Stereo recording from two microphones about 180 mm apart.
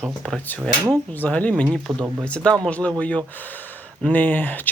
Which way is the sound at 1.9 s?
15° right (ahead or behind).